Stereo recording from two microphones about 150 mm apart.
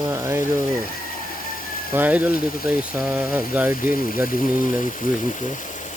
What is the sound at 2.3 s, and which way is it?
Speech, 65° left (ahead or behind).